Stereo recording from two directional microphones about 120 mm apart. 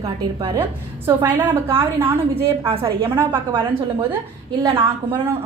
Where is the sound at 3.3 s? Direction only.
40° right (ahead or behind).